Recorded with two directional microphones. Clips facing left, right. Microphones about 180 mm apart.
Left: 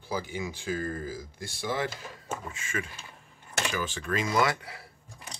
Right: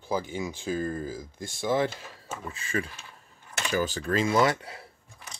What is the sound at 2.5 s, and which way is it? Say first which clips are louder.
Speech: right 4 dB; 35° right (ahead or behind).